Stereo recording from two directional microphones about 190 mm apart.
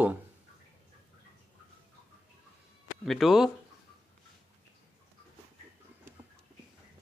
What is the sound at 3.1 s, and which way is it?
Speech, centre (ahead or behind).